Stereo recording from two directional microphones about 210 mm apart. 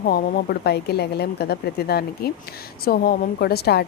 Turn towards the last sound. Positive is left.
turn(degrees=50)  # may be behind; listen again after turning